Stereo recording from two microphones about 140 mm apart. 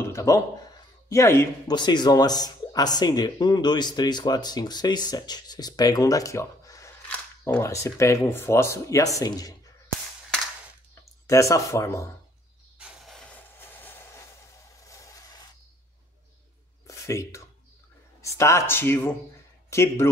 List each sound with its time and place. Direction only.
0.0 s a sound: 20° left (ahead or behind)
1.0 s speech: 20° left (ahead or behind)
1.7 s speech: 30° left (ahead or behind)
11.2 s speech: 20° left (ahead or behind)
12.7 s vehicle: 5° right (ahead or behind); by 15.5 s 25° left (ahead or behind)
16.8 s a sound: 20° left (ahead or behind)
18.2 s speech: 20° left (ahead or behind)